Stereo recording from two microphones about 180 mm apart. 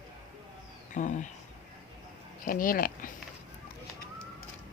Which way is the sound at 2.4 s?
50° left (ahead or behind).